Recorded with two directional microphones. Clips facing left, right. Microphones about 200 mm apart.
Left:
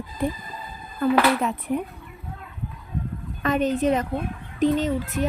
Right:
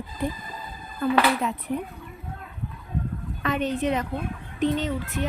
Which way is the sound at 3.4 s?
45° left (ahead or behind).